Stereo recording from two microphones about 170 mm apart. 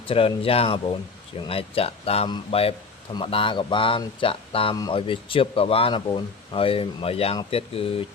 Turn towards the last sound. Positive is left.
turn(degrees=35)  # may be behind; listen again after turning